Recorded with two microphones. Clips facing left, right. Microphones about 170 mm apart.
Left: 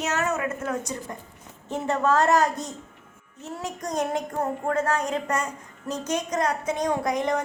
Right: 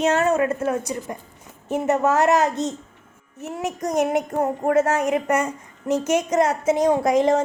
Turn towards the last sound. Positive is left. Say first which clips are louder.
# right 7 dB
turn(degrees=-25)  # may be behind; listen again after turning